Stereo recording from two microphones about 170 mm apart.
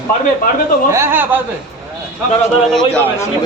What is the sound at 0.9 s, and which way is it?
Speech, 15° right (ahead or behind).